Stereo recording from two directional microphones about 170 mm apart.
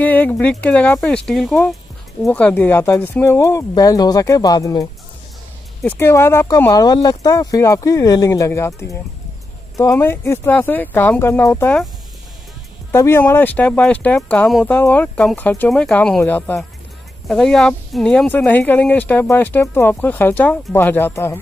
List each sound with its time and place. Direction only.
0.0 s speech: 10° left (ahead or behind)
12.9 s speech: 15° left (ahead or behind)